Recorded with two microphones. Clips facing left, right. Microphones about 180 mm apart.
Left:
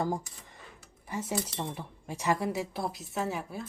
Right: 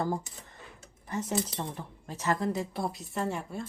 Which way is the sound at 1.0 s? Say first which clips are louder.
Right 2 dB; 10° left (ahead or behind).